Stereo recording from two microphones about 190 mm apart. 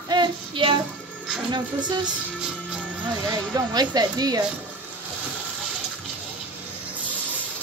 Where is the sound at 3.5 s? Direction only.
20° right (ahead or behind).